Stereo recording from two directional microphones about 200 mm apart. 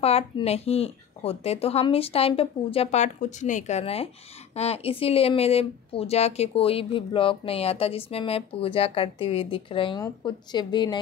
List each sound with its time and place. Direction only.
0.0 s speech: 30° left (ahead or behind)